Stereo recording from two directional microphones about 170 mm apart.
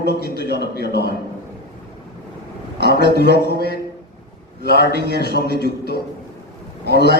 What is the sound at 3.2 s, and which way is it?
Speech, 80° left.